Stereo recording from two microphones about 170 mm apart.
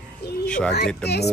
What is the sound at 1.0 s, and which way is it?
Speech, 75° left (ahead or behind).